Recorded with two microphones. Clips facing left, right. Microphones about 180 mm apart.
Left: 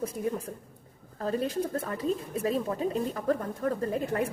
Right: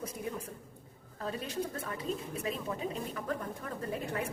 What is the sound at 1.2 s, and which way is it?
A woman's voice, 45° left (ahead or behind).